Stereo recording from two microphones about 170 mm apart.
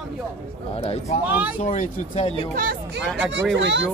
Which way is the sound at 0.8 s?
40° left (ahead or behind).